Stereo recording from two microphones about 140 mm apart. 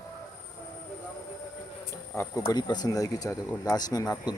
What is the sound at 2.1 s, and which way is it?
Speech, 20° left (ahead or behind).